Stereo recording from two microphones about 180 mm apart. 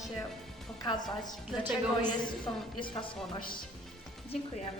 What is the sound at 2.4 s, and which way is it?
Speech, 25° left (ahead or behind).